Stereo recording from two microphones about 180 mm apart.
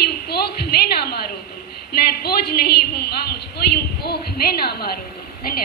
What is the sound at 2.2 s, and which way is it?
A man's voice, 60° left (ahead or behind).